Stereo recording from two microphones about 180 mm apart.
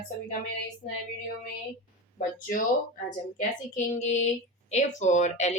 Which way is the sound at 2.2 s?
50° left (ahead or behind).